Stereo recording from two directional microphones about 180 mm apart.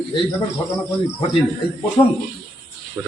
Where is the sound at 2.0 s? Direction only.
20° left (ahead or behind).